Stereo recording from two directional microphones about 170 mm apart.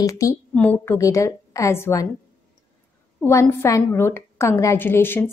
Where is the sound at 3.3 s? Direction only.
15° left (ahead or behind).